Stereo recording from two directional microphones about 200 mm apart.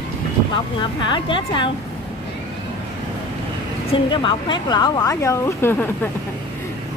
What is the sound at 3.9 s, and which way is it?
A woman's voice, 25° left (ahead or behind).